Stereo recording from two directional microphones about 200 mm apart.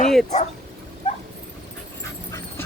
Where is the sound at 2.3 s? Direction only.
15° left (ahead or behind).